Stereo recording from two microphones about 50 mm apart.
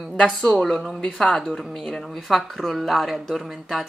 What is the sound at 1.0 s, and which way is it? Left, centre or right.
A woman's voice, centre.